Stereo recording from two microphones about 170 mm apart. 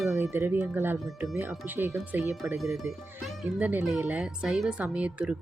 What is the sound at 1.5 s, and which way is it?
Speech, centre (ahead or behind).